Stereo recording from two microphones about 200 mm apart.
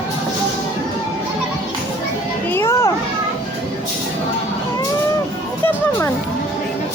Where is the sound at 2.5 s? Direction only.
10° left (ahead or behind).